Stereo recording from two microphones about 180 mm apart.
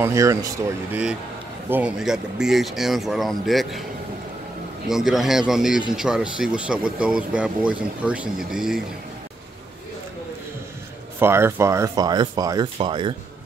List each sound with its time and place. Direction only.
0.0 s speech: 15° right (ahead or behind); by 3.8 s centre (ahead or behind)
4.8 s speech: centre (ahead or behind)
11.1 s speech: 15° right (ahead or behind)